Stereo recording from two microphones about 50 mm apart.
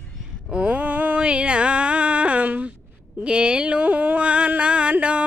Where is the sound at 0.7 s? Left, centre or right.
Right.